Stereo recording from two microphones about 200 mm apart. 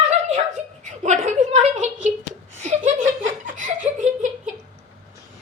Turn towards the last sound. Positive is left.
turn(degrees=-40)  # may be behind; listen again after turning